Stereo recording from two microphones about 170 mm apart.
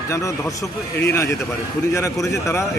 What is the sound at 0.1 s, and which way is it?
A man's voice, 20° left (ahead or behind).